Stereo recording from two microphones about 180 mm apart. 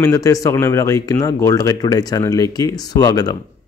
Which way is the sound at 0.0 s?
15° left (ahead or behind).